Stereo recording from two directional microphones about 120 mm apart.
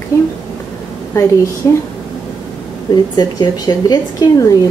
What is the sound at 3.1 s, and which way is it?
A woman's voice, 30° left (ahead or behind).